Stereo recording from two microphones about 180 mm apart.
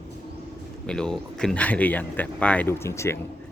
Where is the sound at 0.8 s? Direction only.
5° left (ahead or behind).